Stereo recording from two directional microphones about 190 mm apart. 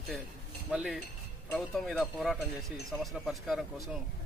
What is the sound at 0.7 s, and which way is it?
Speech, 5° right (ahead or behind).